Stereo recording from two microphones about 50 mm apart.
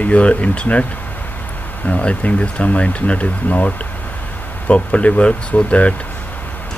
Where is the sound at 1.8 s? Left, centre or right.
Left.